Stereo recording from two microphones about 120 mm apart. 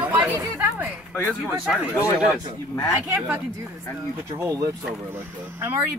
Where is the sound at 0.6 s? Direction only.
15° right (ahead or behind).